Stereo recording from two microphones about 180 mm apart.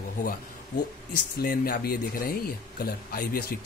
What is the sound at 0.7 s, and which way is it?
Speech, 50° left (ahead or behind).